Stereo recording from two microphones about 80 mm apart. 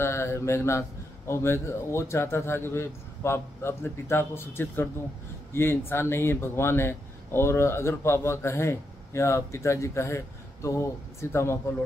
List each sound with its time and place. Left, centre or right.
0.0 s a man's voice: left